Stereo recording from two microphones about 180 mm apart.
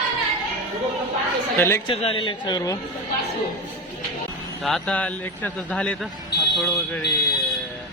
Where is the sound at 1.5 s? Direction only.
15° left (ahead or behind).